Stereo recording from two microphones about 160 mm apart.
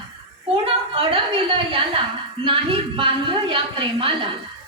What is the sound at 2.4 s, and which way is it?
A woman's voice, 35° right (ahead or behind).